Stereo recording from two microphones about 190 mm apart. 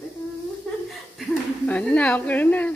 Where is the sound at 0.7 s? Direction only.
5° left (ahead or behind).